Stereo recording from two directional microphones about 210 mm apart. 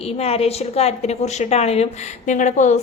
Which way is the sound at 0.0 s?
30° left (ahead or behind).